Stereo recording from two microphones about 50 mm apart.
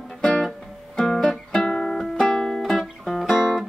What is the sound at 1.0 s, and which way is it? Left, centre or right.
Music, centre.